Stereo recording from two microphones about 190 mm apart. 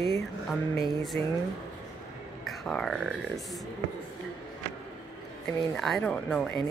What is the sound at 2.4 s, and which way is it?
Speech, centre (ahead or behind).